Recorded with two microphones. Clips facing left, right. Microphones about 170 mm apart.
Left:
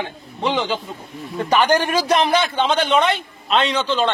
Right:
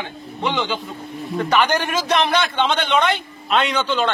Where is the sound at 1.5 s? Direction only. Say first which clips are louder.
Left 3 dB; 40° left (ahead or behind).